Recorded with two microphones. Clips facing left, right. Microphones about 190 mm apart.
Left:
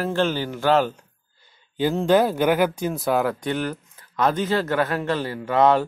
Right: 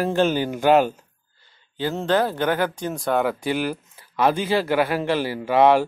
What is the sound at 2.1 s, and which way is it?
Speech, 10° left (ahead or behind).